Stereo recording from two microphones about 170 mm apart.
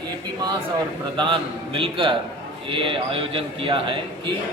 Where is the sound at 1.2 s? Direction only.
30° right (ahead or behind).